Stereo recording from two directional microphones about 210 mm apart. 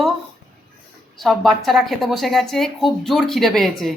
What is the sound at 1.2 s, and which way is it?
A woman's voice, centre (ahead or behind).